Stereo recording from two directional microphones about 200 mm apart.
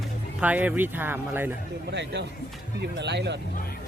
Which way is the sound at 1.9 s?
60° right (ahead or behind).